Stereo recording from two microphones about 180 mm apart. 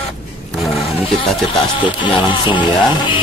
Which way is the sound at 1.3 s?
Centre (ahead or behind).